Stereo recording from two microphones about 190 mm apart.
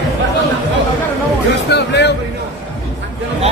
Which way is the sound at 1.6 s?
65° left (ahead or behind).